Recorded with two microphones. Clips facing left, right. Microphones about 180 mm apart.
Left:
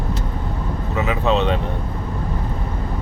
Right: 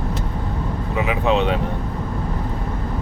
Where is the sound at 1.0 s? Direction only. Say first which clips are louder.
Even; 15° right (ahead or behind).